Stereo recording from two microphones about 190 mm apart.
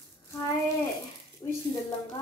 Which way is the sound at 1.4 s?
20° left (ahead or behind).